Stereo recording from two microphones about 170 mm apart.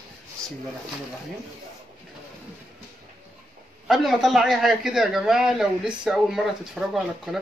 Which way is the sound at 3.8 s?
Centre (ahead or behind).